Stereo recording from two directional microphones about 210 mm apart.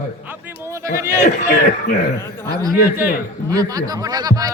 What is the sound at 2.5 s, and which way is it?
Speech, 15° right (ahead or behind).